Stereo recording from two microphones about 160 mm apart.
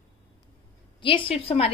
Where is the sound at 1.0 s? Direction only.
35° left (ahead or behind).